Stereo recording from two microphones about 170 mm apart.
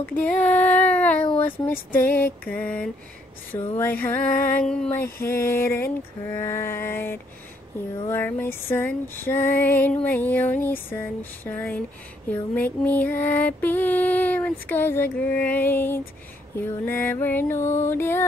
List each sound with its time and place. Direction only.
0.1 s music: 10° left (ahead or behind)